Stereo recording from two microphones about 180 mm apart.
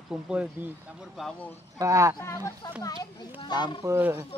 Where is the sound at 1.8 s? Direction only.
15° right (ahead or behind).